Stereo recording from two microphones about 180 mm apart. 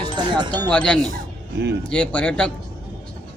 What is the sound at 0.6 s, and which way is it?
A man's voice, 5° left (ahead or behind).